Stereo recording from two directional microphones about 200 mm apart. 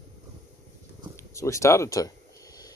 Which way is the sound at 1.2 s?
15° left (ahead or behind).